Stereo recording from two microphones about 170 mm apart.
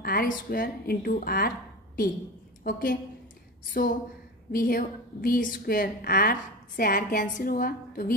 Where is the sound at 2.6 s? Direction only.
55° left (ahead or behind).